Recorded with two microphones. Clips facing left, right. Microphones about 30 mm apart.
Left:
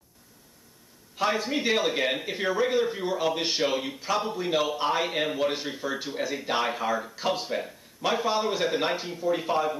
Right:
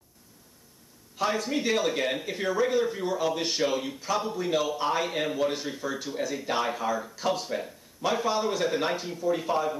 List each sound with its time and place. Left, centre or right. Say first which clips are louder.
1.1 s a man's voice: left 1 dB; centre